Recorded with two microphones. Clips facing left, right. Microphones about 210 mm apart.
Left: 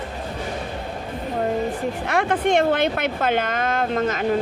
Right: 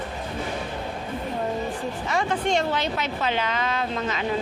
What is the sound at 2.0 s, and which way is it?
Speech, 60° left (ahead or behind).